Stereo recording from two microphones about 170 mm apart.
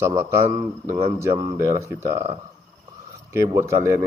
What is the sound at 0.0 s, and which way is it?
Speech, 15° right (ahead or behind).